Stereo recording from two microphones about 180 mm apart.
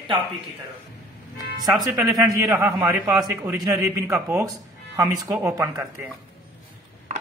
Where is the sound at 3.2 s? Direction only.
Centre (ahead or behind).